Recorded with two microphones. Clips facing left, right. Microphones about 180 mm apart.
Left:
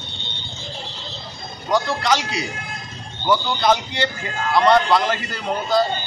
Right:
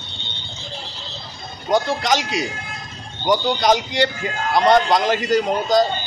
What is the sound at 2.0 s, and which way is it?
A man's voice, 15° right (ahead or behind).